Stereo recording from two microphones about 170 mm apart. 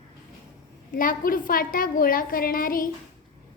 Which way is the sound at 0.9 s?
55° left (ahead or behind).